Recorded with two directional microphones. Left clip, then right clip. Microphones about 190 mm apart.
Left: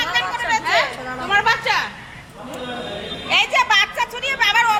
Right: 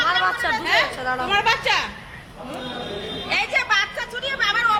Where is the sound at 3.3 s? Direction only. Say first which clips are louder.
Left 5 dB; centre (ahead or behind).